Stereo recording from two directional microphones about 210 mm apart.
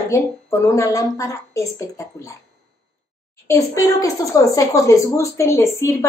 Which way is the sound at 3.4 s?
15° left (ahead or behind).